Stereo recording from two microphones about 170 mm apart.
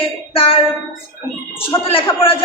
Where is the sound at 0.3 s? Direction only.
30° left (ahead or behind).